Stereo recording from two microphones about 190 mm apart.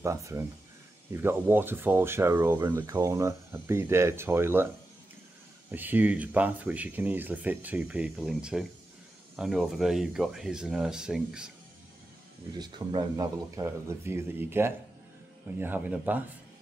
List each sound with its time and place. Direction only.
0.0 s speech: 15° right (ahead or behind)
5.7 s speech: 10° right (ahead or behind)
12.5 s speech: 20° right (ahead or behind)